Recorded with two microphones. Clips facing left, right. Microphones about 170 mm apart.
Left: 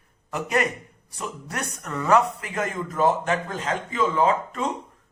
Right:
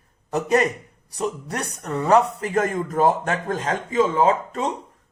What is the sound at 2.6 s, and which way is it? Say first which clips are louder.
Speech: right 4 dB; 45° right (ahead or behind).